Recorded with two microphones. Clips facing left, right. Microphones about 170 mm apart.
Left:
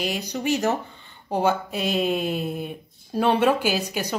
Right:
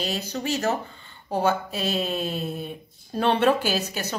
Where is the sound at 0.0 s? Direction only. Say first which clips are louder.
Left 2 dB; 15° left (ahead or behind).